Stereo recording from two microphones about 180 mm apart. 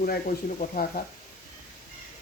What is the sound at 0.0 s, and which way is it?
Speech, 50° left (ahead or behind).